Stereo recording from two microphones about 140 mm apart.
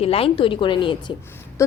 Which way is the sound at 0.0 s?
45° left (ahead or behind).